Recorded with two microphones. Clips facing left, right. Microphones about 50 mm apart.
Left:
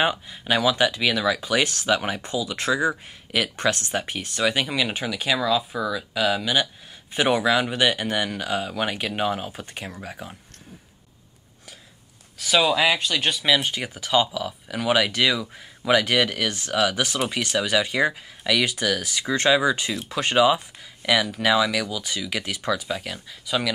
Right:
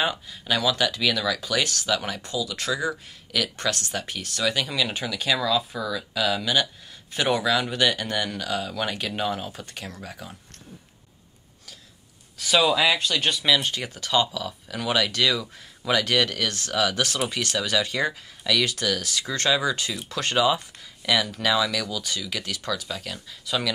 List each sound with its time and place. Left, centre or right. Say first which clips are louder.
0.0 s speech: left 3 dB; left
12.4 s speech: left 1 dB; centre
12.6 s speech: left 1 dB; centre